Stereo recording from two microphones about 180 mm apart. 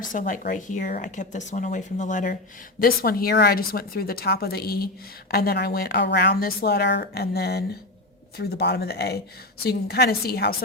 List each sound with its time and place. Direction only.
0.0 s speech: 45° left (ahead or behind)